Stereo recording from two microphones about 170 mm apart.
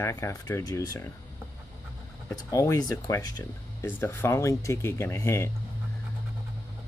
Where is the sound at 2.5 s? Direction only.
20° left (ahead or behind).